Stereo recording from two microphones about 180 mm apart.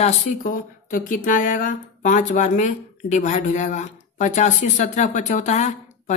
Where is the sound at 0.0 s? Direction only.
45° left (ahead or behind).